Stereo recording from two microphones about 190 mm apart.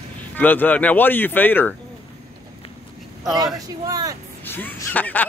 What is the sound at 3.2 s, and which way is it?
Speech, 20° right (ahead or behind).